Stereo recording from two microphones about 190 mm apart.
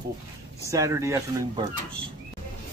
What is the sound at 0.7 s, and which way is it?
Speech, 15° right (ahead or behind).